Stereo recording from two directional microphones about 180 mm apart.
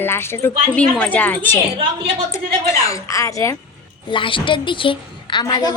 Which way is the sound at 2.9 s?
15° left (ahead or behind).